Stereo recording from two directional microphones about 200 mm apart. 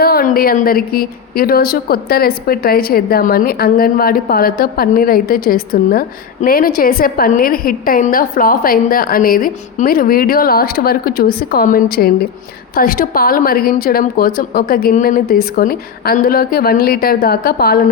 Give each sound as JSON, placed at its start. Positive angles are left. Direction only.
{"t": 0.0, "sound": "a woman's voice", "side_deg": 50}